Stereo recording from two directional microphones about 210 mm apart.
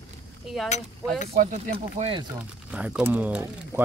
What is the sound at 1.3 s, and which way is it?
Speech, 30° right (ahead or behind).